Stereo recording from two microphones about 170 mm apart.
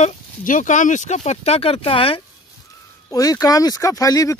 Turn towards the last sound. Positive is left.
turn(degrees=20)  # may be behind; listen again after turning